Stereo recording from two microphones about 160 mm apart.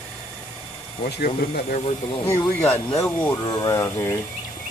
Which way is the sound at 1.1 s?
80° left.